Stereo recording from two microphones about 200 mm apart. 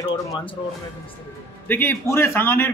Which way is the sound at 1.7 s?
10° left (ahead or behind).